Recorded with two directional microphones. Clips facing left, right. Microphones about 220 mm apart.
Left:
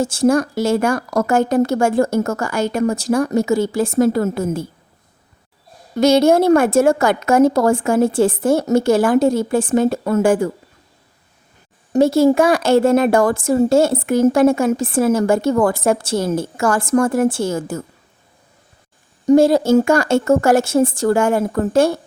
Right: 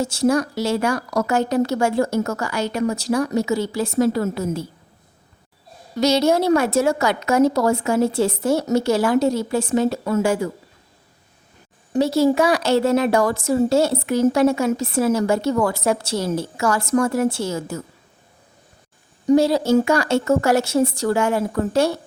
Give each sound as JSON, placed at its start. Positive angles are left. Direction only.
{"t": 0.0, "sound": "speech", "side_deg": 50}
{"t": 6.0, "sound": "speech", "side_deg": 50}
{"t": 11.9, "sound": "speech", "side_deg": 50}
{"t": 19.3, "sound": "speech", "side_deg": 50}